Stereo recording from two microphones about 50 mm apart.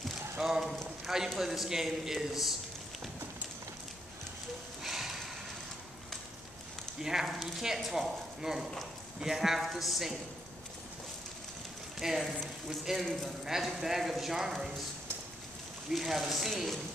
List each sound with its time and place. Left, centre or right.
0.4 s clip-clop: centre
1.0 s a man's voice: centre
4.8 s a sound: centre
7.0 s a man's voice: centre
12.0 s a man's voice: centre
15.9 s a man's voice: centre